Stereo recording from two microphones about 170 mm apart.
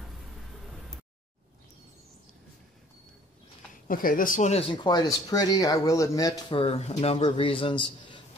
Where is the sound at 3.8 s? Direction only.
55° left (ahead or behind).